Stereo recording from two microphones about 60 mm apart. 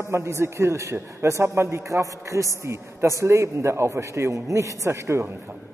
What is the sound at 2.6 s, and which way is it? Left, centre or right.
A man's voice, right.